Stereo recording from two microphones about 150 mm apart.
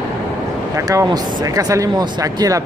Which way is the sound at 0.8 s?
20° right (ahead or behind).